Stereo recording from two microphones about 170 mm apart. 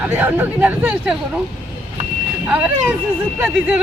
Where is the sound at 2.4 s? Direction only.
10° right (ahead or behind).